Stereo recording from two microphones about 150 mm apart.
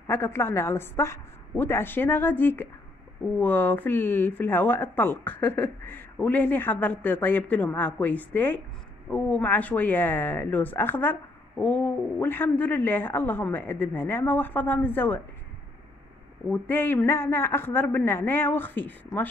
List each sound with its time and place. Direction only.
0.0 s speech: 15° left (ahead or behind)
16.4 s speech: 15° left (ahead or behind)